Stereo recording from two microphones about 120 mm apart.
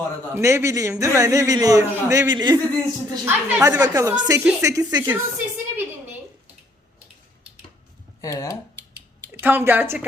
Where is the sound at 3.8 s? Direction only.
30° right (ahead or behind).